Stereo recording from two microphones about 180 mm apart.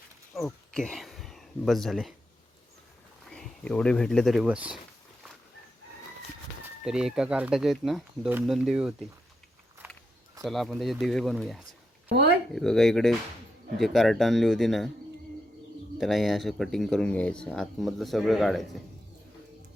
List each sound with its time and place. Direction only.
0.3 s speech: 5° left (ahead or behind)
3.2 s speech: 5° left (ahead or behind)
6.8 s speech: 5° right (ahead or behind)
9.8 s a sound: 10° right (ahead or behind)
10.4 s speech: centre (ahead or behind)
12.1 s speech: 65° right (ahead or behind)
12.5 s speech: centre (ahead or behind)
16.0 s speech: centre (ahead or behind)